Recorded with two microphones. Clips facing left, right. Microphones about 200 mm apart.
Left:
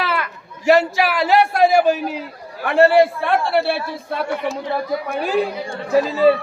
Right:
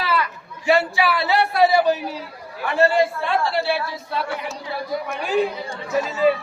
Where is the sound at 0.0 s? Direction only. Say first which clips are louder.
Even; 65° left (ahead or behind).